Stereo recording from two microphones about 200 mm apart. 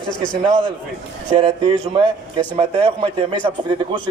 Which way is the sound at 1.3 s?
25° right (ahead or behind).